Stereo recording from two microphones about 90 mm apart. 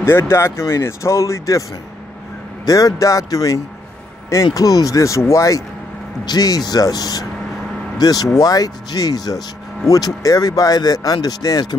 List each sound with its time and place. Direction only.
0.0 s speech: 25° left (ahead or behind)
2.6 s speech: 40° left (ahead or behind)